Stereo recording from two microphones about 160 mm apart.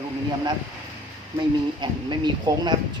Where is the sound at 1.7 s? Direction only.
30° right (ahead or behind).